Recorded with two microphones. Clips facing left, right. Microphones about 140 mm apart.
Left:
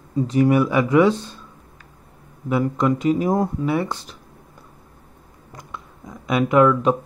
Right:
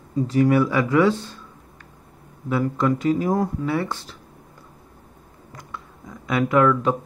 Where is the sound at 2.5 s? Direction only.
20° left (ahead or behind).